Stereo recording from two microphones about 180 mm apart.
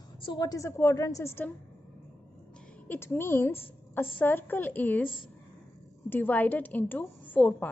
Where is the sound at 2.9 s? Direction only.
15° left (ahead or behind).